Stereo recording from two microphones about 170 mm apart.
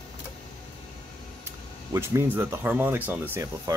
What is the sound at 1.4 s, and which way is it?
Speech, 15° right (ahead or behind).